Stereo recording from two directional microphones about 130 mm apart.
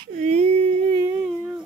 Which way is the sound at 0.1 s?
60° right (ahead or behind).